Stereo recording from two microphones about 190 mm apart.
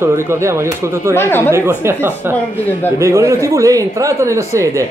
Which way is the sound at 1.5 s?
15° right (ahead or behind).